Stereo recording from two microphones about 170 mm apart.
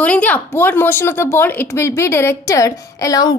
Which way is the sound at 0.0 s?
10° left (ahead or behind).